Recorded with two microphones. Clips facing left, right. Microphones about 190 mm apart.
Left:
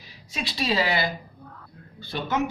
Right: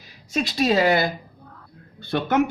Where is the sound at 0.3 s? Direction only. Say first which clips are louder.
Right 6 dB; 45° right (ahead or behind).